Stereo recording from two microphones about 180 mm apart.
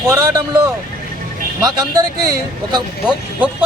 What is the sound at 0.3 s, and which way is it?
Speech, 20° right (ahead or behind).